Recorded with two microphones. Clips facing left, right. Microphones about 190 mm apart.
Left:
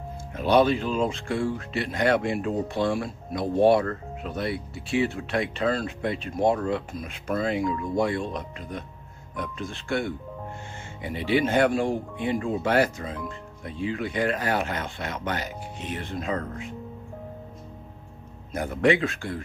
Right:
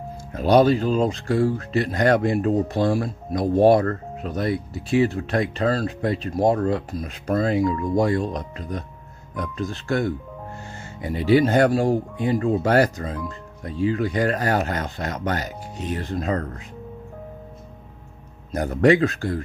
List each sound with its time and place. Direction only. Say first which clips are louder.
0.3 s speech: right 4 dB; 40° right (ahead or behind)
18.5 s speech: right 5 dB; 40° right (ahead or behind)